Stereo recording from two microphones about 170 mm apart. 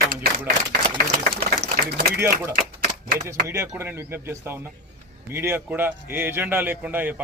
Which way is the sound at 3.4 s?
15° right (ahead or behind).